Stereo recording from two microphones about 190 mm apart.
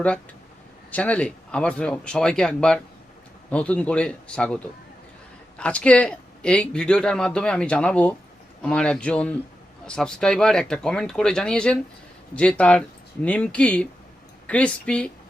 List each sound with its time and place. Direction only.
0.9 s speech: 10° left (ahead or behind)